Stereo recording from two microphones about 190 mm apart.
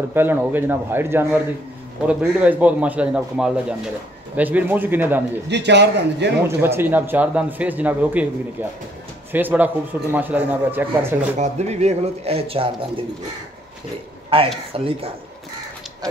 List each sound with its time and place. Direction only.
0.1 s speech: 10° right (ahead or behind)
5.5 s a man's voice: 65° right (ahead or behind)
6.4 s speech: 10° right (ahead or behind)
11.1 s speech: 35° right (ahead or behind)
14.3 s speech: 30° right (ahead or behind)